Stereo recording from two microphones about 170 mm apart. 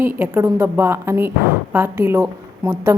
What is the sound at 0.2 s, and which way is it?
A woman's voice, 15° right (ahead or behind).